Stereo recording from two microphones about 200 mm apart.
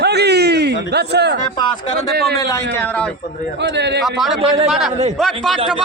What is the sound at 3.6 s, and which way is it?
Speech, 60° right (ahead or behind).